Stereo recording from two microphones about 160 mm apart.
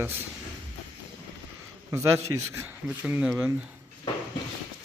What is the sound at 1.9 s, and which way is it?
Speech, 20° right (ahead or behind).